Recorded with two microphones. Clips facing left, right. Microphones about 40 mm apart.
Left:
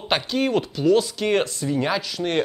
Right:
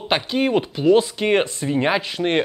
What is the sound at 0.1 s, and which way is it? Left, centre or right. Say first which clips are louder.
Speech: right 2 dB; centre.